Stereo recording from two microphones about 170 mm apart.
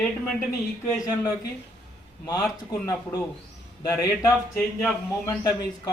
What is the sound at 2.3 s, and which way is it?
A man's voice, 20° left (ahead or behind).